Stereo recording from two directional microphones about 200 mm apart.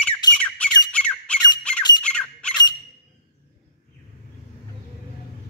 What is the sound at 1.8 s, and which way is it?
Squawk, 20° left (ahead or behind).